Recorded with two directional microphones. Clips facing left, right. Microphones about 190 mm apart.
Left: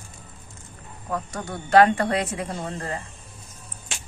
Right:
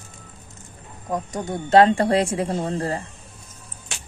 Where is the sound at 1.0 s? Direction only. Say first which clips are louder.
Right 4 dB; 20° right (ahead or behind); by 3.0 s 35° right (ahead or behind).